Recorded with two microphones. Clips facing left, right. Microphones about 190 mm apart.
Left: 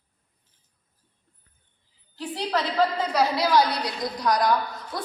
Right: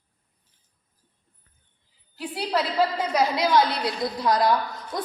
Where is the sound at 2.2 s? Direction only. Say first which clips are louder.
Right 1 dB; 10° right (ahead or behind).